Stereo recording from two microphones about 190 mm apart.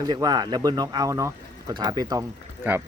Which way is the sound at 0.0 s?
20° right (ahead or behind).